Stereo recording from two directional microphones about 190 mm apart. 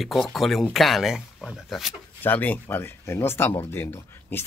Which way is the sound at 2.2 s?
10° left (ahead or behind).